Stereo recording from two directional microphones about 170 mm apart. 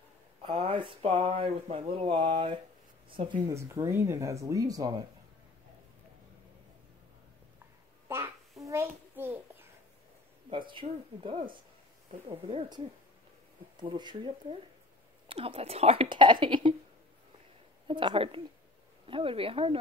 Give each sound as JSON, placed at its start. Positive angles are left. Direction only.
{"t": 0.4, "sound": "speech", "side_deg": -30}
{"t": 3.5, "sound": "speech", "side_deg": -15}
{"t": 8.1, "sound": "a sound", "side_deg": -20}
{"t": 10.5, "sound": "speech", "side_deg": -30}
{"t": 17.8, "sound": "speech", "side_deg": -30}